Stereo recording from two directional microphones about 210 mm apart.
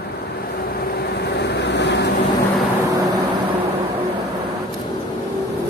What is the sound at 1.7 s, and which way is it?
Vehicle, 55° left (ahead or behind).